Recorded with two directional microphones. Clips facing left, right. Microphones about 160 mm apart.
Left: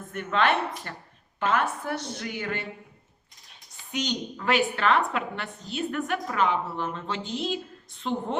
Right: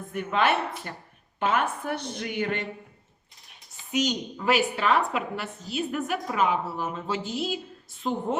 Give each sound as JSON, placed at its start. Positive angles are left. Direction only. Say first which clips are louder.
{"t": 0.1, "sound": "a woman's voice", "louder": "even", "side_deg": -5}
{"t": 3.9, "sound": "a woman's voice", "louder": "right 3 dB", "side_deg": -5}